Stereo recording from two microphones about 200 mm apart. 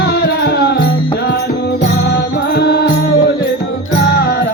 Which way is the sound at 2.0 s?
50° left (ahead or behind).